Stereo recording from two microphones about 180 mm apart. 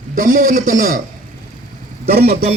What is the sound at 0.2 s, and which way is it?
Speech, 50° right (ahead or behind).